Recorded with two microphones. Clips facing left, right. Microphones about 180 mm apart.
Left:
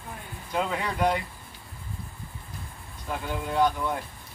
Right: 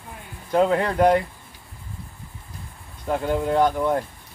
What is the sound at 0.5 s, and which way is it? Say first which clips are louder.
Speech: right 9 dB; 50° right (ahead or behind).